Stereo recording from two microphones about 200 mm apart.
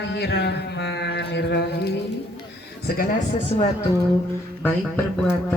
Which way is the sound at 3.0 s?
45° left (ahead or behind).